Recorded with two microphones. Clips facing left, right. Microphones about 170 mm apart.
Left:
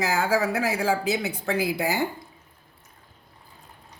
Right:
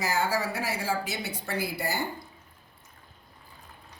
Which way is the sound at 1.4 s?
90° left.